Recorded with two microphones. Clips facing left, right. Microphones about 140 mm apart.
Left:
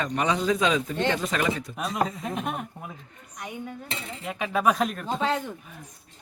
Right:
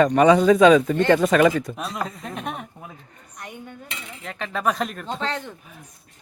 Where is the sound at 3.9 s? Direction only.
30° left (ahead or behind).